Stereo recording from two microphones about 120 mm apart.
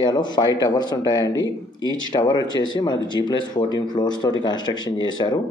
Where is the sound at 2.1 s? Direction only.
35° left (ahead or behind).